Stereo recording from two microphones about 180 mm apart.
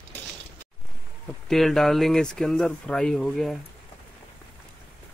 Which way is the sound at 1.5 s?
Centre (ahead or behind).